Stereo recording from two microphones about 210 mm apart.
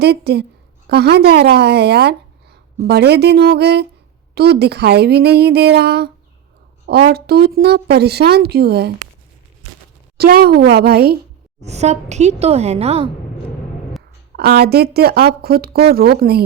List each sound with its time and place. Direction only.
0.0 s a woman's voice: 50° right (ahead or behind)
10.2 s a woman's voice: 45° right (ahead or behind)
11.6 s a woman's voice: 30° right (ahead or behind)
14.3 s a woman's voice: 50° right (ahead or behind)